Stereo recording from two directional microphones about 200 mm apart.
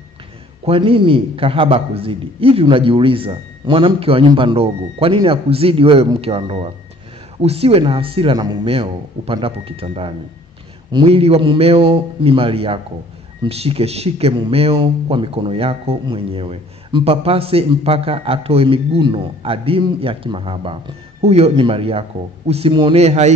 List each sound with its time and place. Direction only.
0.7 s a man's voice: 25° right (ahead or behind)